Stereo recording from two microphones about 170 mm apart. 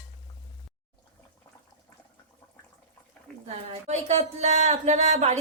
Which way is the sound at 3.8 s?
40° right (ahead or behind).